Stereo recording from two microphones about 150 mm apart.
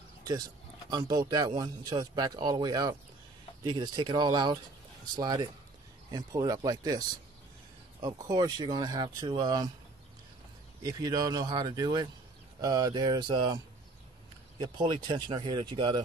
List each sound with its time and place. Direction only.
0.8 s speech: 25° right (ahead or behind)
8.0 s speech: 25° right (ahead or behind)
10.8 s speech: 25° right (ahead or behind)
14.6 s speech: 30° right (ahead or behind)